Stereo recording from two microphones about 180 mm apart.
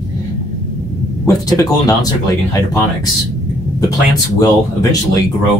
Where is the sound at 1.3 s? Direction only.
20° left (ahead or behind).